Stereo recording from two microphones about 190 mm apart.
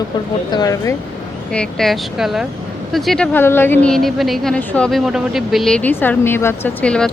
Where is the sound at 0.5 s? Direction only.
20° left (ahead or behind).